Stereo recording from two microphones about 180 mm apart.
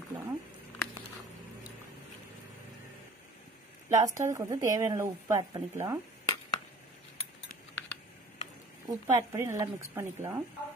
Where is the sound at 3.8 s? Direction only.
20° right (ahead or behind).